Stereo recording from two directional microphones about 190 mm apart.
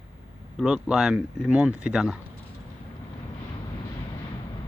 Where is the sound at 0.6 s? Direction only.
5° right (ahead or behind).